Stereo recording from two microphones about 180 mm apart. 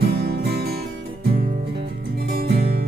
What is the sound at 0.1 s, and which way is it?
Music, 60° right (ahead or behind).